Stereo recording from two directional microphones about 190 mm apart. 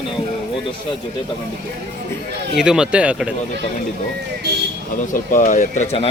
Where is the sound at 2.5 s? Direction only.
5° right (ahead or behind).